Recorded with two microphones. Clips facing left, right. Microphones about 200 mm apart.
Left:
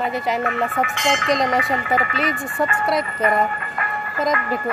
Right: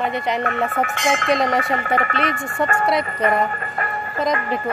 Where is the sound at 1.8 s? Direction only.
50° right (ahead or behind).